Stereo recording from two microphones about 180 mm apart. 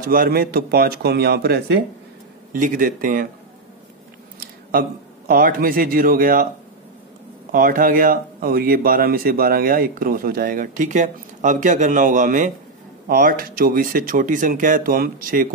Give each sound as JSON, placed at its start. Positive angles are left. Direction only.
{"t": 0.0, "sound": "speech", "side_deg": -55}
{"t": 2.5, "sound": "a man's voice", "side_deg": -50}
{"t": 4.4, "sound": "a sound", "side_deg": -55}
{"t": 5.3, "sound": "a man's voice", "side_deg": -50}
{"t": 7.5, "sound": "a man's voice", "side_deg": -50}